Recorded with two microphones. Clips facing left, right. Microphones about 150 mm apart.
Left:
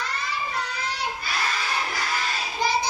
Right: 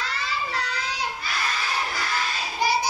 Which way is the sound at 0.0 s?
90° right.